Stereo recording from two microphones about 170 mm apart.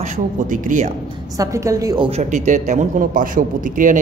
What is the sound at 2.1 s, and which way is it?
Speech, 40° right (ahead or behind).